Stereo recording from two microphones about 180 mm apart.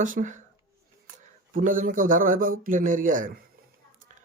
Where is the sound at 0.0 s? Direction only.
45° right (ahead or behind).